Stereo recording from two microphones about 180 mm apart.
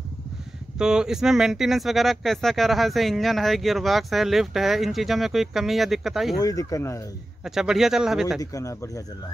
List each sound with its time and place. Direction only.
0.7 s speech: 5° right (ahead or behind)
6.4 s speech: 20° left (ahead or behind)
7.4 s speech: centre (ahead or behind)
8.4 s speech: 20° left (ahead or behind)